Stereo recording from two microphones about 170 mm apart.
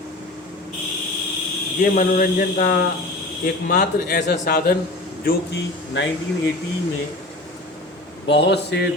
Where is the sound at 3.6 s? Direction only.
55° left (ahead or behind).